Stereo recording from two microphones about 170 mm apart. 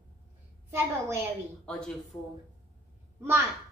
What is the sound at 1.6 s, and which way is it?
Speech, 5° left (ahead or behind).